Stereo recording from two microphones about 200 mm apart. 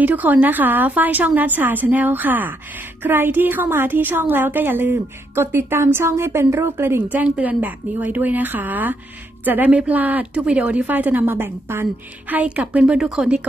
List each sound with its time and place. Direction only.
0.0 s a woman's voice: 10° right (ahead or behind)